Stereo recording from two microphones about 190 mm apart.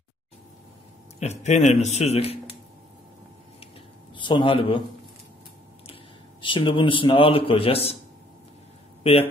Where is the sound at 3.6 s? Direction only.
25° left (ahead or behind).